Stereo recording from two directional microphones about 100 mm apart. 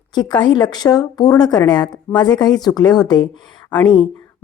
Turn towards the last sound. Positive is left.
turn(degrees=50)  # may be behind; listen again after turning